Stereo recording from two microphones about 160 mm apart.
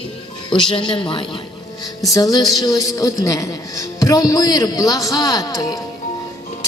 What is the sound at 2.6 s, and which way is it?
A woman's voice, 20° left (ahead or behind).